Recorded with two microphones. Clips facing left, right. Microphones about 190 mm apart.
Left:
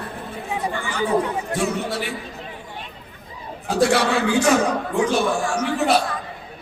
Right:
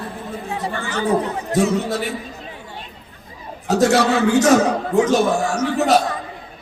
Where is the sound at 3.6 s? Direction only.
40° right (ahead or behind).